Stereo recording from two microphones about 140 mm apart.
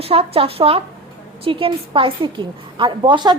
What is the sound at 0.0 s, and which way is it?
A woman's voice, 45° right (ahead or behind).